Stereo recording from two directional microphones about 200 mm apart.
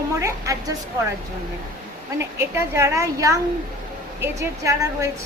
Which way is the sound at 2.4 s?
15° right (ahead or behind).